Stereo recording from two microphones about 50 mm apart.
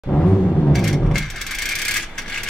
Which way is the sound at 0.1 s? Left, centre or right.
Left.